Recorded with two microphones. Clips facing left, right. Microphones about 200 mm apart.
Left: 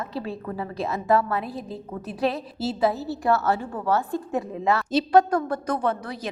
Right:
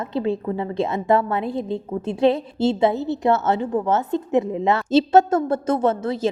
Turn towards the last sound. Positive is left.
turn(degrees=-25)  # may be behind; listen again after turning